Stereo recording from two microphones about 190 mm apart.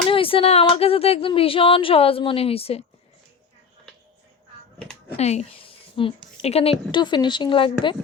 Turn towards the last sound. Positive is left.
turn(degrees=25)  # may be behind; listen again after turning